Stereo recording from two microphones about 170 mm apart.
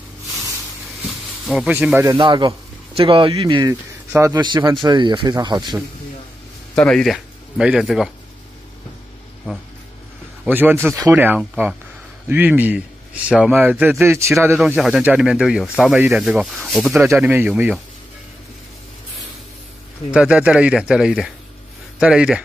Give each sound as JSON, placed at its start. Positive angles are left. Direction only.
{"t": 1.5, "sound": "speech", "side_deg": -5}
{"t": 2.1, "sound": "speech", "side_deg": -30}
{"t": 6.7, "sound": "speech", "side_deg": 5}
{"t": 10.4, "sound": "a man's voice", "side_deg": -10}
{"t": 14.8, "sound": "speech", "side_deg": -5}
{"t": 16.9, "sound": "a man's voice", "side_deg": -15}
{"t": 20.1, "sound": "speech", "side_deg": -5}